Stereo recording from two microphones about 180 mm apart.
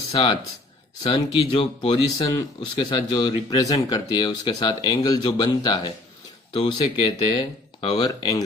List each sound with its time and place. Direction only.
0.1 s speech: 25° left (ahead or behind)